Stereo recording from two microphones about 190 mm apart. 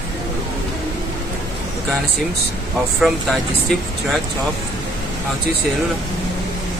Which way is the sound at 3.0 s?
Centre (ahead or behind).